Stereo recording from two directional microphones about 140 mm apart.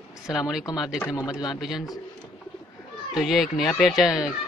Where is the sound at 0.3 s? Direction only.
5° right (ahead or behind).